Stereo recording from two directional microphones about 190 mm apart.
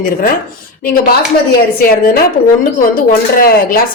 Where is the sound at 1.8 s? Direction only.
50° left (ahead or behind).